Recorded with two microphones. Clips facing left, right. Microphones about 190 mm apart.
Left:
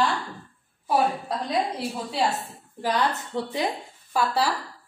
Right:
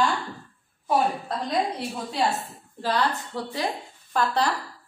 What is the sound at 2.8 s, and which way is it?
Speech, 20° left (ahead or behind).